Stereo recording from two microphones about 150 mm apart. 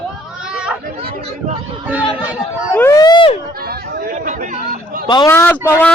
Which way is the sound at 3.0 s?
35° left (ahead or behind).